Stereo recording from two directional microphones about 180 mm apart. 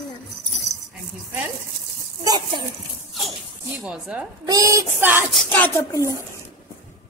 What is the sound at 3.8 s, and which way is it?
Speech, 5° right (ahead or behind).